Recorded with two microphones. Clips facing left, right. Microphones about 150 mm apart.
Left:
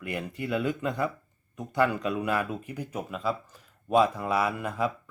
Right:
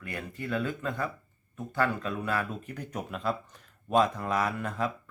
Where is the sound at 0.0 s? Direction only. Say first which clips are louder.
Left 4 dB; 15° left (ahead or behind).